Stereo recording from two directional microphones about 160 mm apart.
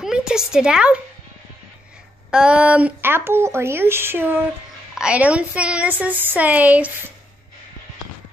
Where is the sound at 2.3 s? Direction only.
5° right (ahead or behind).